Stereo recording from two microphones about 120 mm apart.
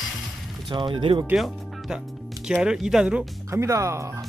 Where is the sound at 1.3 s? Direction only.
5° right (ahead or behind).